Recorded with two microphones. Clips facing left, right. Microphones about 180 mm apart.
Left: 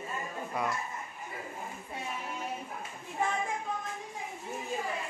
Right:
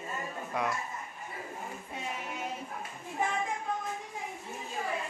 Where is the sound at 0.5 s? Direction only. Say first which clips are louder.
Right 1 dB; centre (ahead or behind).